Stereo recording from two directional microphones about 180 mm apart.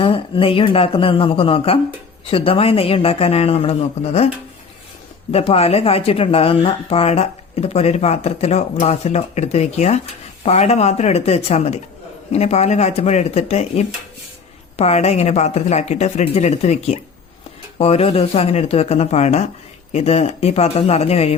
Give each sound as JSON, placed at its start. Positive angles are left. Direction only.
{"t": 0.0, "sound": "speech", "side_deg": 30}
{"t": 5.3, "sound": "speech", "side_deg": 35}